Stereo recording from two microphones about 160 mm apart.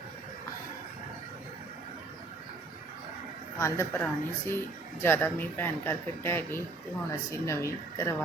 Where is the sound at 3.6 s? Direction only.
15° left (ahead or behind).